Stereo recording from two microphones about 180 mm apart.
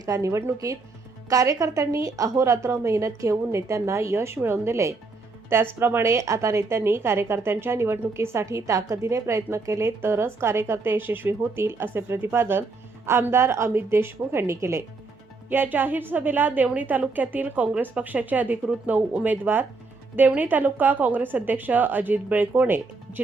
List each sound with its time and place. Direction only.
0.0 s a woman's voice: 20° right (ahead or behind)